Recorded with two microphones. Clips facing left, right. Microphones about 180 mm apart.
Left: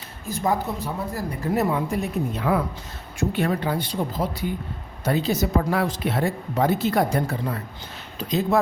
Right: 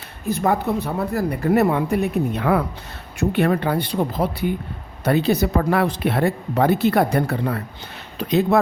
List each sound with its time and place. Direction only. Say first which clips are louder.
0.3 s a woman's voice: right 4 dB; 65° right (ahead or behind)